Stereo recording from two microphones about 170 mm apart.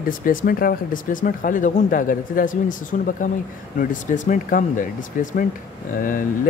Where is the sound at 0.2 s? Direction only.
55° left (ahead or behind).